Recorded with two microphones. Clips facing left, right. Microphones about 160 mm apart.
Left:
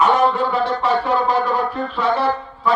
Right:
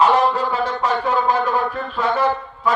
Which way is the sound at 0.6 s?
45° right (ahead or behind).